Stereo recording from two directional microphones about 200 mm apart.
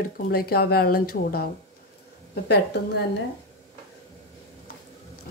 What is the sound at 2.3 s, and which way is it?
Speech, 55° left (ahead or behind).